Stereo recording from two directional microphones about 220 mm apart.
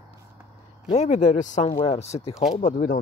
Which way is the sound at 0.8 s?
30° left (ahead or behind).